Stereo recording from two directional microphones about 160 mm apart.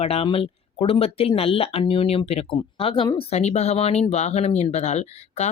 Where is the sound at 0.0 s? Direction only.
40° left (ahead or behind).